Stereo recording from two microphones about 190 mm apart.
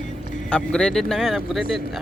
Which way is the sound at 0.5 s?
5° left (ahead or behind).